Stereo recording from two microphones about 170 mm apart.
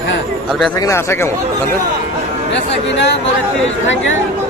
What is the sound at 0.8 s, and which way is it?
Speech, 15° left (ahead or behind).